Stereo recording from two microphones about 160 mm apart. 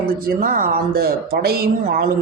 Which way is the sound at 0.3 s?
55° right (ahead or behind).